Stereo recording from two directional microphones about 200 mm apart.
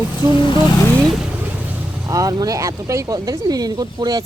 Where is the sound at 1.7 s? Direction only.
15° right (ahead or behind).